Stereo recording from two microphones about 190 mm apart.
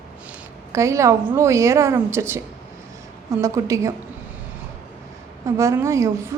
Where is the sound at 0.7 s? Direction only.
15° right (ahead or behind).